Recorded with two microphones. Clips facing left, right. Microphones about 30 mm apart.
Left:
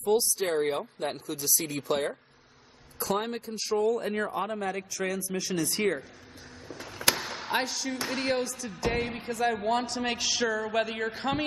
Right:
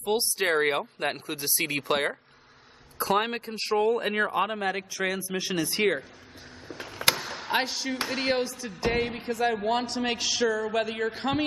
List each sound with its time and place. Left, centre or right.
0.0 s speech: right
5.4 s speech: right
6.7 s a sound: centre
7.2 s basketball bounce: centre
7.5 s a man's voice: right